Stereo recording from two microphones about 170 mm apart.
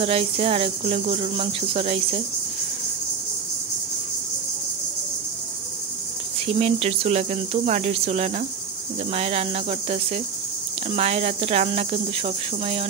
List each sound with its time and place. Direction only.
0.0 s speech: 35° right (ahead or behind)
6.4 s speech: 35° right (ahead or behind)